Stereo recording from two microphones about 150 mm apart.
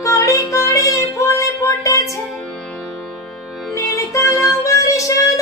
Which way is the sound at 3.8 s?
20° left (ahead or behind).